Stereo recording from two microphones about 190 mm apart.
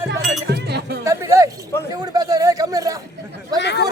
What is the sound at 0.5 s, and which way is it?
Chink, 60° right (ahead or behind).